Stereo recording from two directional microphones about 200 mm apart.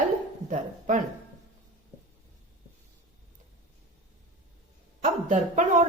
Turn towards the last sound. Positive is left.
turn(degrees=-40)  # may be behind; listen again after turning